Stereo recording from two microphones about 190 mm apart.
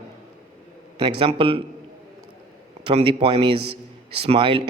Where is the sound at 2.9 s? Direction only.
30° right (ahead or behind).